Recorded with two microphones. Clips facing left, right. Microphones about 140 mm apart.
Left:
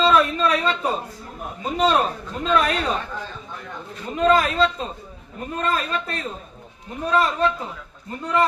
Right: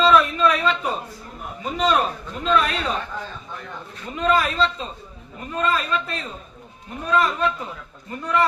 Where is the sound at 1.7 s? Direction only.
30° left (ahead or behind).